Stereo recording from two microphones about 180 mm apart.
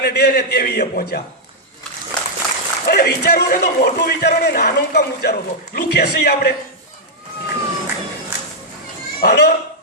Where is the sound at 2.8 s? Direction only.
60° left (ahead or behind).